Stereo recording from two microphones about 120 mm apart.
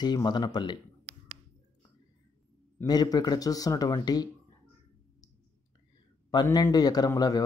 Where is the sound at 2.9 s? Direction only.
35° left (ahead or behind).